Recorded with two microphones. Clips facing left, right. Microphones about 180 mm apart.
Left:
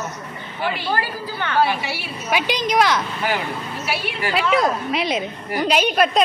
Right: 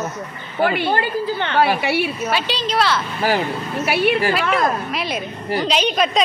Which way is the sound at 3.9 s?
60° right (ahead or behind).